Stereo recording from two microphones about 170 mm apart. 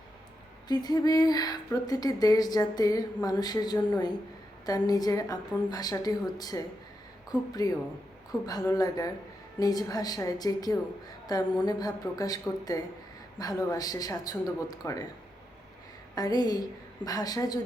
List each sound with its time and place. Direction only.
0.7 s speech: 25° left (ahead or behind)
16.1 s speech: 25° left (ahead or behind)